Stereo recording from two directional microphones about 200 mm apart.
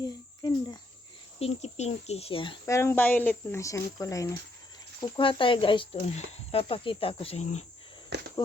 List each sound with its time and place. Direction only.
0.0 s speech: 20° left (ahead or behind)
1.4 s speech: 30° left (ahead or behind)
8.1 s cricket: 55° right (ahead or behind)